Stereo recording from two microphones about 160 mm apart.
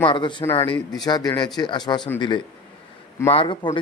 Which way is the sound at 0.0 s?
30° left (ahead or behind).